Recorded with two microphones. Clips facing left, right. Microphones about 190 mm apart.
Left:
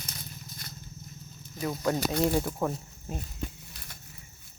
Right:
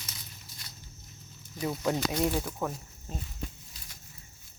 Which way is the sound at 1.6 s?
10° right (ahead or behind).